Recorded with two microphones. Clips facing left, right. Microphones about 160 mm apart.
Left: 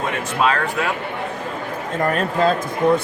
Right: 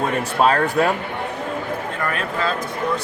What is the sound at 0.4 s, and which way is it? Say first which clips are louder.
Speech: right 3 dB; 40° right (ahead or behind).